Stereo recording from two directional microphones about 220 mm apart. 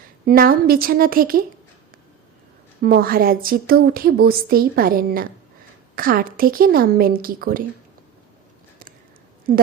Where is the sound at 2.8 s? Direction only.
45° right (ahead or behind).